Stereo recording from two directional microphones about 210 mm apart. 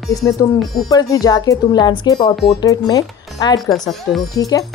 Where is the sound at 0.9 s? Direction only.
20° left (ahead or behind).